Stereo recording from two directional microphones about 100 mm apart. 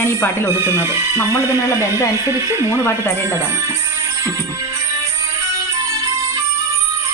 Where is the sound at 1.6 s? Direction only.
30° left (ahead or behind).